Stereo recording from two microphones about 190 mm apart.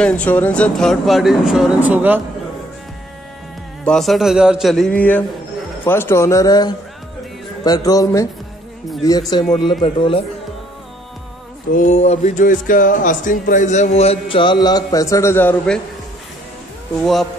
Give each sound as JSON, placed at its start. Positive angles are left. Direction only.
{"t": 0.0, "sound": "speech", "side_deg": 5}
{"t": 3.8, "sound": "a man's voice", "side_deg": 0}
{"t": 9.6, "sound": "a man's voice", "side_deg": 25}
{"t": 11.7, "sound": "speech", "side_deg": 40}
{"t": 17.0, "sound": "speech", "side_deg": 0}